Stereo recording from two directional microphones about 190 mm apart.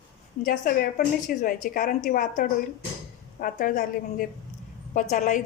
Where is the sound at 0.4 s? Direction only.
45° left (ahead or behind).